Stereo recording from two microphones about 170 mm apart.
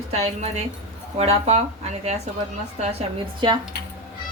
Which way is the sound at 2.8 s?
35° right (ahead or behind).